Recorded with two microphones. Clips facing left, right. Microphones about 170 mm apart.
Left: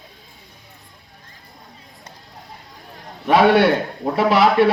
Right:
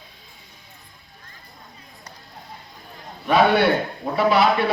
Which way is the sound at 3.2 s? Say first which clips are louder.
Left 3 dB; 90° left.